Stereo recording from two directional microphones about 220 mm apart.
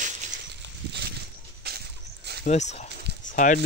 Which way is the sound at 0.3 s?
50° right (ahead or behind).